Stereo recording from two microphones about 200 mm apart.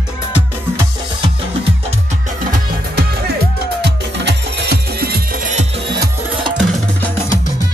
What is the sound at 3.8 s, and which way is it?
Music, 55° right (ahead or behind).